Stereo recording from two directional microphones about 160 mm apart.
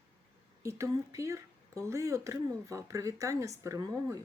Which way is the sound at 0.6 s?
20° right (ahead or behind).